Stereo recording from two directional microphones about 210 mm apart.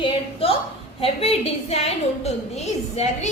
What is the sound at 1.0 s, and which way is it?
A woman's voice, 30° left (ahead or behind).